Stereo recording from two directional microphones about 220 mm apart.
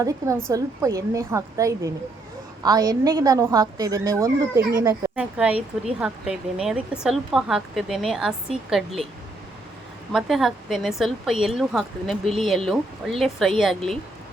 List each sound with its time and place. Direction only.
0.0 s a woman's voice: 15° right (ahead or behind)
10.1 s speech: centre (ahead or behind)